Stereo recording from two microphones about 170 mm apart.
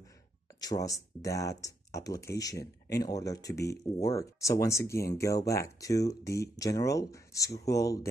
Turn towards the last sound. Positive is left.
turn(degrees=20)  # may be behind; listen again after turning